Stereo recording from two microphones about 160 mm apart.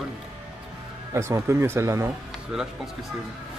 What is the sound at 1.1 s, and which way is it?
Speech, 20° right (ahead or behind).